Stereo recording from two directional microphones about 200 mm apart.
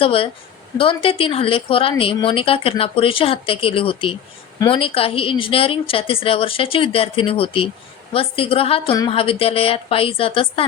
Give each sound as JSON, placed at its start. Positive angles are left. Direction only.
{"t": 0.0, "sound": "speech", "side_deg": 25}